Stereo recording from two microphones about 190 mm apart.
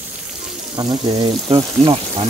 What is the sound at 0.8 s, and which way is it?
Speech, 20° right (ahead or behind).